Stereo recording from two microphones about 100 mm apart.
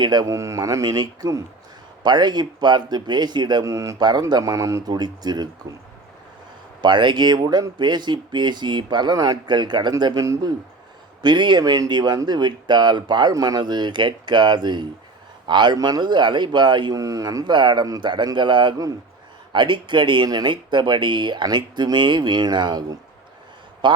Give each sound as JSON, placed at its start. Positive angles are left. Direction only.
{"t": 0.0, "sound": "speech", "side_deg": -45}
{"t": 0.3, "sound": "speech", "side_deg": -30}
{"t": 2.0, "sound": "speech", "side_deg": -45}
{"t": 3.6, "sound": "speech", "side_deg": -30}
{"t": 4.0, "sound": "speech", "side_deg": -45}
{"t": 6.8, "sound": "speech", "side_deg": -50}
{"t": 17.0, "sound": "speech", "side_deg": -35}
{"t": 17.4, "sound": "a man's voice", "side_deg": -50}